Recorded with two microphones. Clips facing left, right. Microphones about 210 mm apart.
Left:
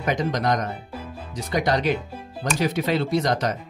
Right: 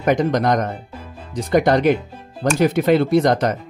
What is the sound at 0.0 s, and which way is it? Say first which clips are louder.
Speech: right 6 dB; 50° right (ahead or behind).